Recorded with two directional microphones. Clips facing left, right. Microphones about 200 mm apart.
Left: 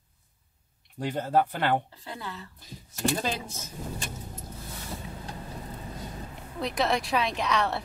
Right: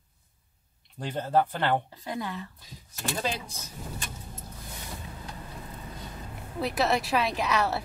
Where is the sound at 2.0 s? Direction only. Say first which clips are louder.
Right 5 dB; 15° right (ahead or behind).